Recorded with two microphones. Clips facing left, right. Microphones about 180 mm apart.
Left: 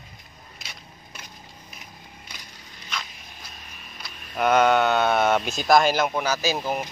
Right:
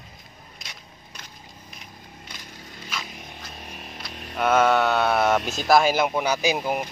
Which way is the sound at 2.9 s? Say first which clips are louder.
Even; 5° right (ahead or behind).